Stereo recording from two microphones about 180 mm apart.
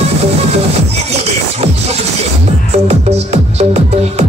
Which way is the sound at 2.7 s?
35° right (ahead or behind).